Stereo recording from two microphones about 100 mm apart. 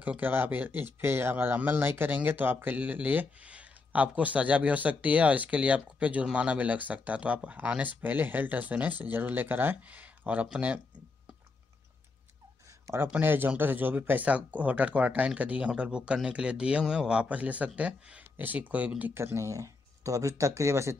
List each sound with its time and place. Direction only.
0.0 s speech: 15° right (ahead or behind)
12.8 s speech: 25° right (ahead or behind)
19.1 s speech: 25° right (ahead or behind)